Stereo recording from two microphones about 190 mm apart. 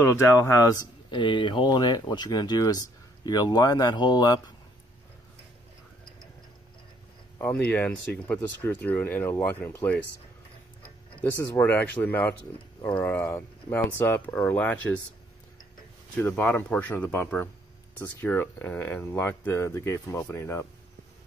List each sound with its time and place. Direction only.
0.0 s speech: 15° left (ahead or behind)
7.3 s speech: 10° left (ahead or behind)
11.5 s speech: 10° left (ahead or behind)
16.2 s speech: 10° left (ahead or behind)